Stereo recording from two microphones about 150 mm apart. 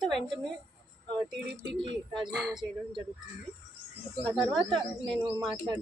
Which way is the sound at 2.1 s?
Centre (ahead or behind).